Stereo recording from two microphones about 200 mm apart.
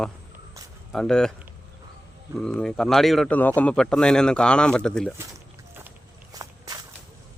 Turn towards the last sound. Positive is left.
turn(degrees=-15)  # may be behind; listen again after turning